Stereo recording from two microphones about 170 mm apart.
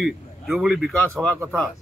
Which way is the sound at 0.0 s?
Centre (ahead or behind).